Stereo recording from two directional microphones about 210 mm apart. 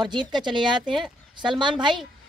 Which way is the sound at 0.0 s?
20° right (ahead or behind).